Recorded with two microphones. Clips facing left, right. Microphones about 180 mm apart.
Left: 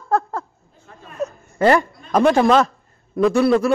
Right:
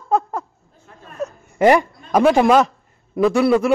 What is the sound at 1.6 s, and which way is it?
A man's voice, 15° right (ahead or behind).